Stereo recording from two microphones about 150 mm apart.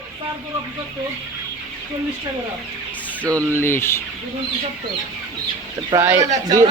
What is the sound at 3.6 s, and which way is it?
Speech, 15° left (ahead or behind).